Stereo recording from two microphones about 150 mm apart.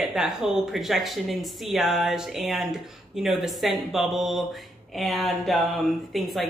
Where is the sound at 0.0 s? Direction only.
Centre (ahead or behind).